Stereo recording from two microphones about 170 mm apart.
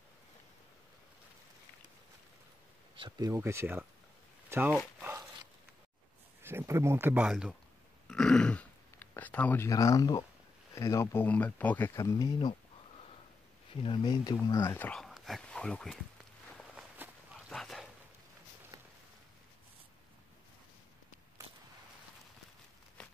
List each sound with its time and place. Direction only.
3.0 s speech: 20° right (ahead or behind)
6.4 s speech: 15° right (ahead or behind); by 12.5 s 25° left (ahead or behind)
13.8 s speech: 25° left (ahead or behind); by 16.0 s 5° left (ahead or behind)
16.5 s walk: 10° right (ahead or behind)
17.5 s dog: centre (ahead or behind)
18.7 s a sound: 25° right (ahead or behind)
23.0 s walk: 5° left (ahead or behind)